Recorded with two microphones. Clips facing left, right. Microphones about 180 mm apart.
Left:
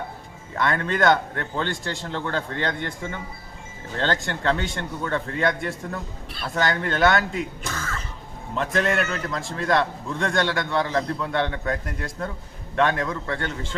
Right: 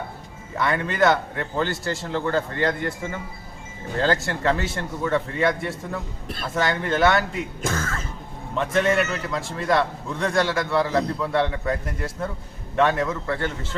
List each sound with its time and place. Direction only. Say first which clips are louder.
0.5 s a man's voice: even; centre (ahead or behind)
4.0 s a man's voice: right 2 dB; 5° right (ahead or behind)
7.6 s music: right 5 dB; 50° right (ahead or behind)
8.5 s a man's voice: right 2 dB; centre (ahead or behind)